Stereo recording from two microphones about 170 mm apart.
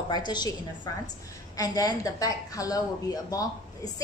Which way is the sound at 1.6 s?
20° left (ahead or behind).